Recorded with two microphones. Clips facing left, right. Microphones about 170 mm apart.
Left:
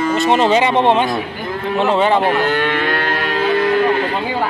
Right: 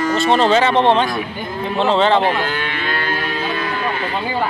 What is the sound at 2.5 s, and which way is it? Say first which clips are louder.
Music: left 6 dB; 60° left (ahead or behind).